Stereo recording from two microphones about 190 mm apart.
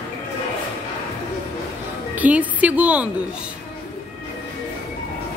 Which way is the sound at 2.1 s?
10° right (ahead or behind).